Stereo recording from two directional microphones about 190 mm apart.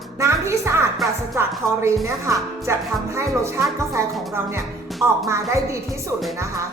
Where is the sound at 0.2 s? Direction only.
15° right (ahead or behind).